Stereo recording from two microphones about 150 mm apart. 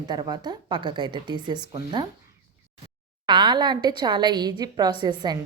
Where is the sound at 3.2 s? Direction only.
30° right (ahead or behind).